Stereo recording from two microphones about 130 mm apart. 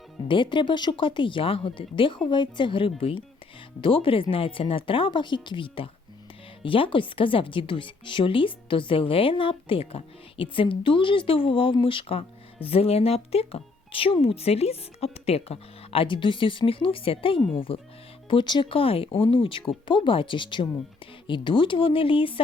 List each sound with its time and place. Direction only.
0.3 s speech: 40° left (ahead or behind)